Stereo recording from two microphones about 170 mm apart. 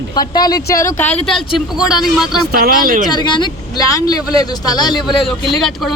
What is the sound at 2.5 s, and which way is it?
Speech, 60° right (ahead or behind).